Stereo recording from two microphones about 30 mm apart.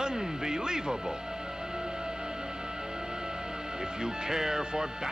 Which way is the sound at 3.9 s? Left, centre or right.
Centre.